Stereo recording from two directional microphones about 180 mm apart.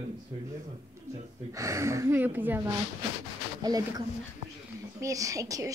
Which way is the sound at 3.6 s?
20° right (ahead or behind).